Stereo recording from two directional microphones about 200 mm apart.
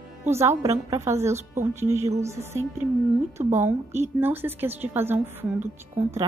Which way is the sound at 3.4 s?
30° right (ahead or behind).